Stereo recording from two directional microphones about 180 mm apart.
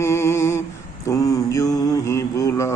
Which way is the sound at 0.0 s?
15° left (ahead or behind).